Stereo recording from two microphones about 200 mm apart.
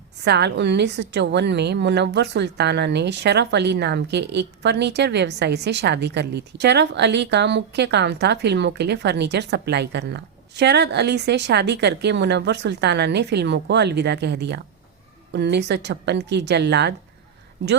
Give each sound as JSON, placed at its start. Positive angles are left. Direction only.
{"t": 0.3, "sound": "a woman's voice", "side_deg": -60}